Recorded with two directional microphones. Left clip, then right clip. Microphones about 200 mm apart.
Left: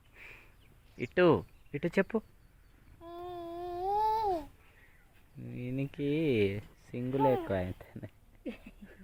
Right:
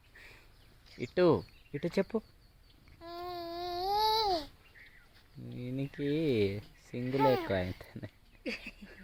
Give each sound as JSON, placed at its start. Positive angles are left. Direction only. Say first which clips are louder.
{"t": 0.2, "sound": "a sound", "louder": "left 3 dB", "side_deg": 0}
{"t": 0.9, "sound": "speech", "louder": "left 1 dB", "side_deg": -5}
{"t": 3.2, "sound": "child singing", "louder": "right 2 dB", "side_deg": -20}
{"t": 3.7, "sound": "babbling", "louder": "even", "side_deg": 0}
{"t": 5.5, "sound": "speech", "louder": "left 1 dB", "side_deg": -5}